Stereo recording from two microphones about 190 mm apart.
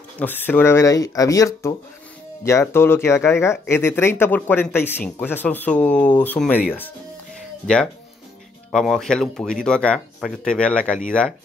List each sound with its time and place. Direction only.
0.2 s speech: 10° left (ahead or behind)